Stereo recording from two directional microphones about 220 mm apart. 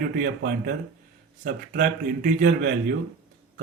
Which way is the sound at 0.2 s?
45° right (ahead or behind).